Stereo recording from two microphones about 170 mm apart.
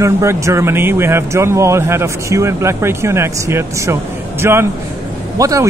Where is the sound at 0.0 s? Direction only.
15° right (ahead or behind).